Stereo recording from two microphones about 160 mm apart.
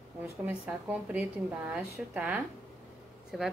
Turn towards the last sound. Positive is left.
turn(degrees=0)  # may be behind; listen again after turning